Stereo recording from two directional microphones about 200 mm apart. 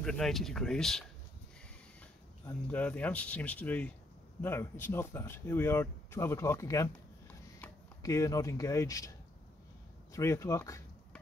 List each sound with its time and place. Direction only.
0.0 s speech: centre (ahead or behind)
2.4 s speech: 5° left (ahead or behind)
10.1 s speech: 15° left (ahead or behind)